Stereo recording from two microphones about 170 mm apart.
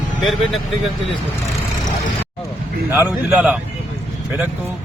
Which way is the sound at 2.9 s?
10° right (ahead or behind).